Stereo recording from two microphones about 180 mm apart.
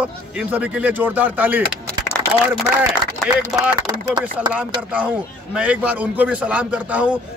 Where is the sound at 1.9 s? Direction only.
5° left (ahead or behind).